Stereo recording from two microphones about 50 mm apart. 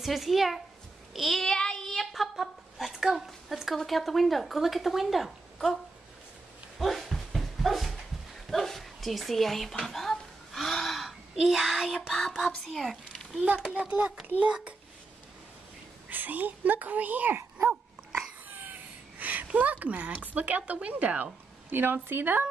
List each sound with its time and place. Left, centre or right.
0.0 s speech: centre
1.1 s child singing: centre
1.4 s child singing: centre
3.3 s speech: centre
6.8 s dog: centre
11.1 s a child's voice: centre
13.7 s speech: right
16.1 s speech: right
18.5 s a sound: right
19.4 s speech: right